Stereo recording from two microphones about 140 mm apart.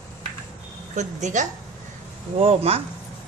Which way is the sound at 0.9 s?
60° right (ahead or behind).